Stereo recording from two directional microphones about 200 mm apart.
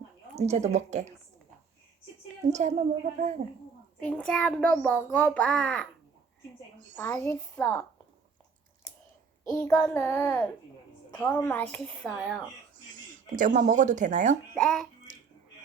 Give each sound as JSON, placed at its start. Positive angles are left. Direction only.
{"t": 0.3, "sound": "a woman's voice", "side_deg": -35}
{"t": 2.5, "sound": "a woman's voice", "side_deg": -35}
{"t": 4.0, "sound": "a child's voice", "side_deg": 5}
{"t": 6.9, "sound": "a child's voice", "side_deg": 10}
{"t": 9.5, "sound": "a child's voice", "side_deg": 10}
{"t": 12.8, "sound": "speech", "side_deg": -40}
{"t": 14.5, "sound": "a child's voice", "side_deg": 0}